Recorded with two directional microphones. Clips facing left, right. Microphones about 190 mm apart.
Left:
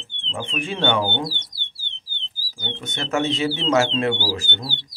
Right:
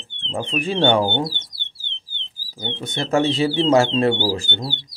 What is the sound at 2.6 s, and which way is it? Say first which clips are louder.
Speech: right 4 dB; 35° right (ahead or behind).